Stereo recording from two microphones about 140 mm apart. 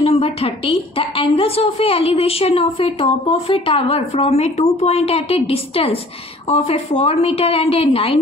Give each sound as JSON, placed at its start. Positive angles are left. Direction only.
{"t": 0.0, "sound": "a woman's voice", "side_deg": 45}